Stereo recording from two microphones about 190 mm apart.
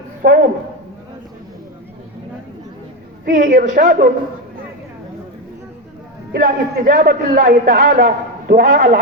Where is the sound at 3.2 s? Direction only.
45° right (ahead or behind).